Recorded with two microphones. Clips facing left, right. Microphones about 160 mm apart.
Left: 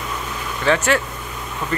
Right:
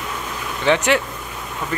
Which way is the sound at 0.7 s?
15° right (ahead or behind).